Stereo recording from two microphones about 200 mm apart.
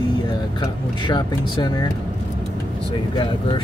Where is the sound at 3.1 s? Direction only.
25° left (ahead or behind).